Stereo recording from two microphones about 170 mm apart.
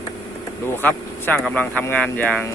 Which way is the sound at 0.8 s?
5° left (ahead or behind).